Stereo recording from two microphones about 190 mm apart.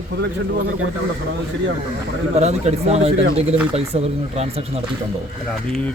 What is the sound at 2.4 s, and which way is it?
Speech, 35° right (ahead or behind).